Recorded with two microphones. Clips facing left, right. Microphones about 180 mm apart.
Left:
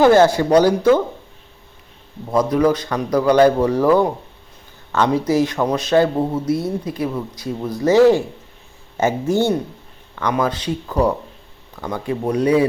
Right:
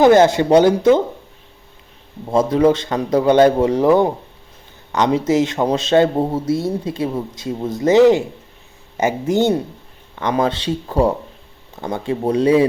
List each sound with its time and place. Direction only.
0.0 s a man's voice: 20° right (ahead or behind)
2.3 s a man's voice: 25° right (ahead or behind)